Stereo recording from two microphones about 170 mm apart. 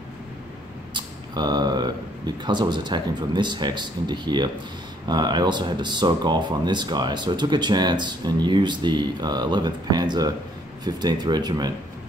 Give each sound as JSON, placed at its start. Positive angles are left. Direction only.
{"t": 0.9, "sound": "speech", "side_deg": -25}